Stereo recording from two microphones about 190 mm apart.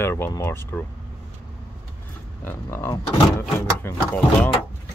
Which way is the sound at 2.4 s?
15° left (ahead or behind).